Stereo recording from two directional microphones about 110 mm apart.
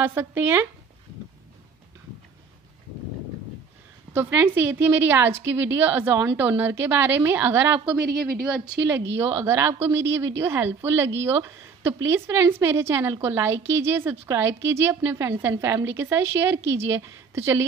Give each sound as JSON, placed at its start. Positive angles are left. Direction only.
{"t": 0.0, "sound": "speech", "side_deg": -20}
{"t": 4.1, "sound": "speech", "side_deg": -20}
{"t": 8.9, "sound": "speech", "side_deg": -20}